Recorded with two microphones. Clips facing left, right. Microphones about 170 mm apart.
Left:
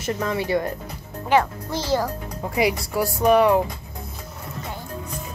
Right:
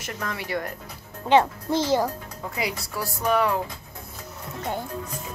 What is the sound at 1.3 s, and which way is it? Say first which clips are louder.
Speech: right 1 dB; 20° right (ahead or behind).